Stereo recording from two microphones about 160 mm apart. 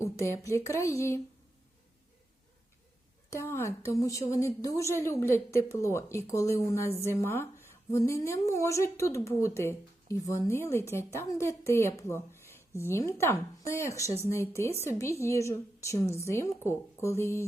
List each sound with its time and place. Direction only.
0.0 s a woman's voice: 20° left (ahead or behind)
3.2 s a woman's voice: 15° left (ahead or behind)